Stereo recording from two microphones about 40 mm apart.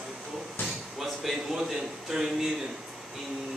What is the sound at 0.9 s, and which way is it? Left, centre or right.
Speech, centre.